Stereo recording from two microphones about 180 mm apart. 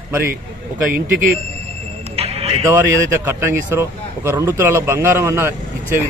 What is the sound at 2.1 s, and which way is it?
Music, 35° right (ahead or behind).